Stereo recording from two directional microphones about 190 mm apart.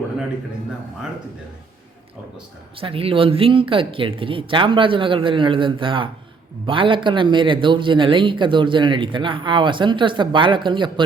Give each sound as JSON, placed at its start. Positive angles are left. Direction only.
{"t": 2.7, "sound": "speech", "side_deg": -30}